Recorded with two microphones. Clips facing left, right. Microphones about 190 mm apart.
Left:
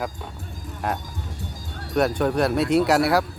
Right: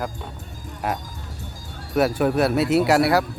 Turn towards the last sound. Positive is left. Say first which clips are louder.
# right 1 dB
turn(degrees=0)  # may be behind; listen again after turning